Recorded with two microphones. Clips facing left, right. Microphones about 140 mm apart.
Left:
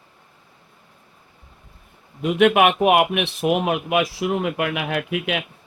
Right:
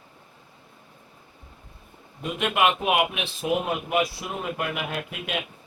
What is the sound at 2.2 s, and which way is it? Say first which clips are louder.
A man's voice: left 8 dB; 70° left (ahead or behind).